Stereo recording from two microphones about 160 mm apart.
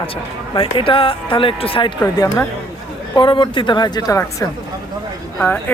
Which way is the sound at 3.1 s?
30° left (ahead or behind).